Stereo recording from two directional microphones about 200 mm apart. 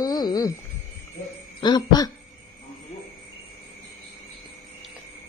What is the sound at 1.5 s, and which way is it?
Speech, 20° left (ahead or behind).